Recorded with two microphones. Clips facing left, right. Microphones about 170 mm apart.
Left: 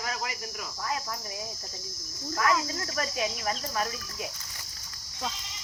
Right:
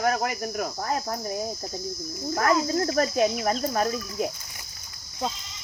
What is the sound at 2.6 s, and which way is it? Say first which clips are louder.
Cricket: right 10 dB; 45° right (ahead or behind).